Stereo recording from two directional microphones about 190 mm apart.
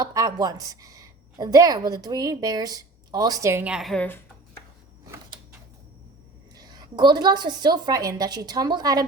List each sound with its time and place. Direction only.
0.0 s a woman's voice: 20° right (ahead or behind); by 4.2 s 5° left (ahead or behind)
6.6 s a woman's voice: 20° right (ahead or behind)